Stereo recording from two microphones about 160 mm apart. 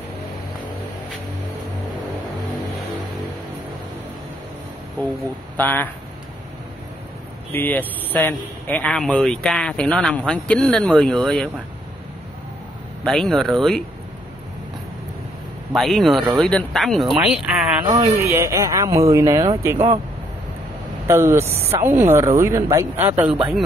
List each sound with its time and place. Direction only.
5.6 s a man's voice: 10° left (ahead or behind)
7.5 s a man's voice: 10° left (ahead or behind)
13.0 s speech: 5° left (ahead or behind)
15.7 s speech: centre (ahead or behind)
17.9 s speech: 20° right (ahead or behind)
21.1 s speech: 15° right (ahead or behind)